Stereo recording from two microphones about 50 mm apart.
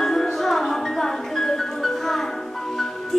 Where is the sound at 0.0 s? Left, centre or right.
Centre.